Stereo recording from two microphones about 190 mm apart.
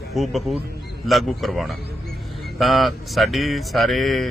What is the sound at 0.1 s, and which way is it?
Speech, centre (ahead or behind).